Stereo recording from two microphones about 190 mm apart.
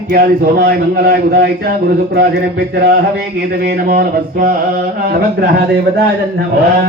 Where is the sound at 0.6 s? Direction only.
55° right (ahead or behind).